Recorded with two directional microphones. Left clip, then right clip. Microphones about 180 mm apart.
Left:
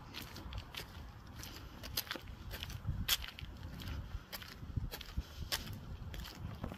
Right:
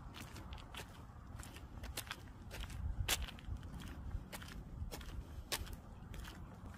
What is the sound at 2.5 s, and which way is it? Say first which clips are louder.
Biting: left 1 dB; 15° left (ahead or behind).